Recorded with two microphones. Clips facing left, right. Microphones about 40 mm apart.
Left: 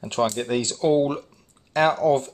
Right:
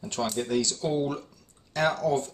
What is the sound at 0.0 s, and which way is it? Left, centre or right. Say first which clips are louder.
Speech: left 6 dB; left.